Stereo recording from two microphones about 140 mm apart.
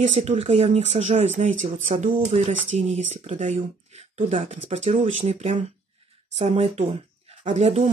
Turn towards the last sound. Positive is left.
turn(degrees=-50)  # may be behind; listen again after turning